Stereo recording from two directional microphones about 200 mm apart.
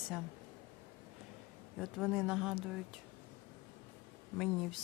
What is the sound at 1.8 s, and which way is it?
Speech, centre (ahead or behind).